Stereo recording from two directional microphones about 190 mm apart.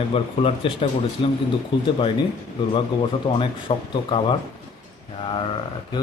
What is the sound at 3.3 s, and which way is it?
Speech, 25° left (ahead or behind).